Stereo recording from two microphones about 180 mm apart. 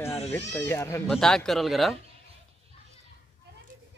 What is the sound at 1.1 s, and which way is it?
Speech, 5° left (ahead or behind).